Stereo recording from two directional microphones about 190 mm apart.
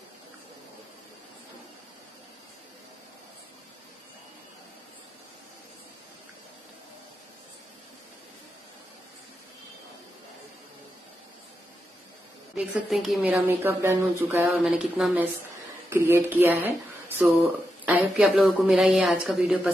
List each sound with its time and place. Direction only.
12.5 s a woman's voice: centre (ahead or behind)
14.6 s a woman's voice: centre (ahead or behind)
17.8 s a woman's voice: 5° right (ahead or behind)